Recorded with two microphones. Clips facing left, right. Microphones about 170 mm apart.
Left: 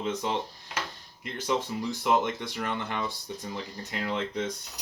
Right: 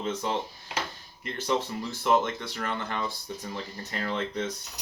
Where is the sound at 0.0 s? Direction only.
15° left (ahead or behind).